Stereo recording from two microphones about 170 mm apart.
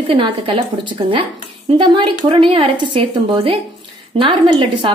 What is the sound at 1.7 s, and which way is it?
A woman's voice, 30° right (ahead or behind).